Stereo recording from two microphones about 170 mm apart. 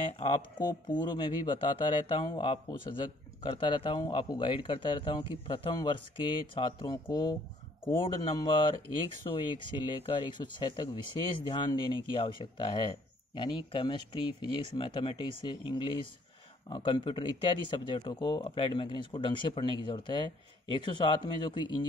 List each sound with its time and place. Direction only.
0.6 s a man's voice: 25° left (ahead or behind)